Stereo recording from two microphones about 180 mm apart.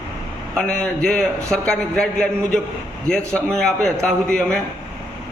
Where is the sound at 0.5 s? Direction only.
5° left (ahead or behind).